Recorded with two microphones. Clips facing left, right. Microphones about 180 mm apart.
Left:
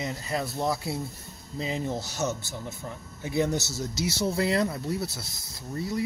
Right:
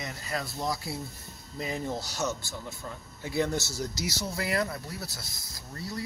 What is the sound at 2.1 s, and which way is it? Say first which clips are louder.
Speech: left 2 dB; 20° left (ahead or behind).